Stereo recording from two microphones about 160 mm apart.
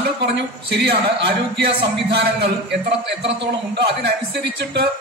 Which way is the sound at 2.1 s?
90° right.